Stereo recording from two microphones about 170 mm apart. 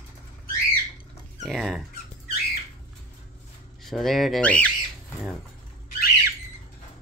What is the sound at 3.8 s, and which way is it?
Speech, centre (ahead or behind).